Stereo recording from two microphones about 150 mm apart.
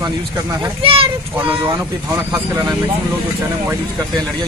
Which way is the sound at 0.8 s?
40° right (ahead or behind).